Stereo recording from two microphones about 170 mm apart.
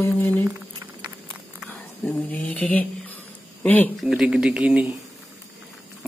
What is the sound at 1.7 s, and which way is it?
Speech, 10° left (ahead or behind).